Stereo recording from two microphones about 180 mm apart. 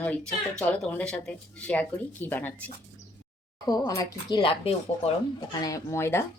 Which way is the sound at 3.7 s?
20° left (ahead or behind).